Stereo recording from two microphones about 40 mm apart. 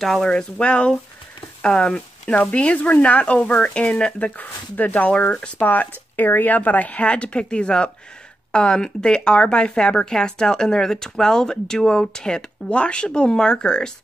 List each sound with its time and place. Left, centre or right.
0.0 s speech: centre
0.3 s speech: left
2.5 s speech: left
4.2 s speech: left